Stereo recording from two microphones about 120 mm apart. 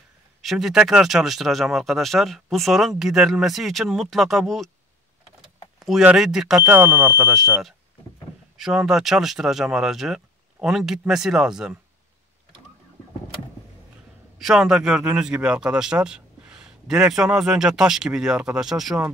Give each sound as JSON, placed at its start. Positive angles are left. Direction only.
{"t": 0.4, "sound": "speech", "side_deg": 0}
{"t": 5.9, "sound": "speech", "side_deg": -5}
{"t": 6.6, "sound": "speech", "side_deg": -15}
{"t": 8.5, "sound": "speech", "side_deg": -5}
{"t": 14.4, "sound": "speech", "side_deg": -5}